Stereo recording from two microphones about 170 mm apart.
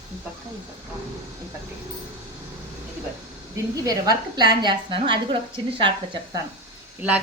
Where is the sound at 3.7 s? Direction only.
20° right (ahead or behind).